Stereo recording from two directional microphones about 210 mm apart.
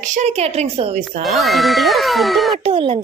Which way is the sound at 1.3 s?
Centre (ahead or behind).